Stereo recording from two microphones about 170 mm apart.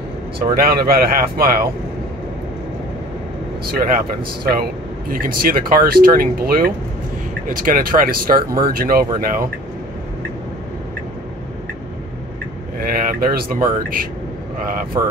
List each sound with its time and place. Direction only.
0.6 s speech: 65° right (ahead or behind)
3.6 s speech: 60° right (ahead or behind)
5.1 s speech: 60° right (ahead or behind)
12.7 s speech: 60° right (ahead or behind)